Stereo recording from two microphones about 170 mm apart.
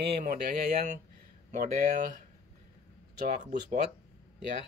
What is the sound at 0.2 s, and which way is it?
Speech, 50° right (ahead or behind).